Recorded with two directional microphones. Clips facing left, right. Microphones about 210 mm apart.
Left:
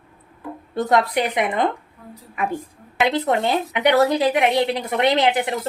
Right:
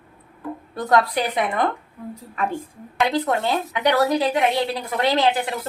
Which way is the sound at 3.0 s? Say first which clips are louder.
Left 2 dB; 20° left (ahead or behind).